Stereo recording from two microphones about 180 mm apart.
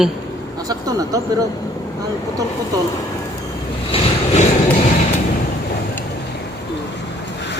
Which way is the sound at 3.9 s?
30° left (ahead or behind).